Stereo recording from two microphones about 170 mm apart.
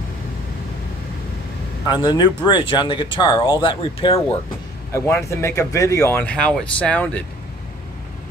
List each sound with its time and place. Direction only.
1.9 s speech: 25° left (ahead or behind)
4.9 s speech: 15° left (ahead or behind)